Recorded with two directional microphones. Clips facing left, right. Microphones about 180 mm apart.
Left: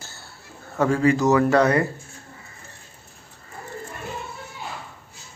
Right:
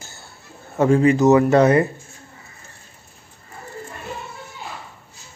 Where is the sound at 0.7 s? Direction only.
20° right (ahead or behind).